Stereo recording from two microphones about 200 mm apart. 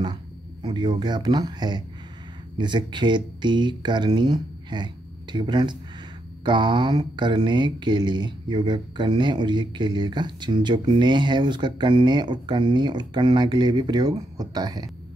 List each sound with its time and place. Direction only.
0.0 s speech: 20° right (ahead or behind)